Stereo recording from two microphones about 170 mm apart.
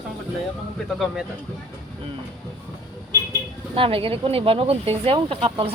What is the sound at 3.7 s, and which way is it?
Speech, 30° right (ahead or behind).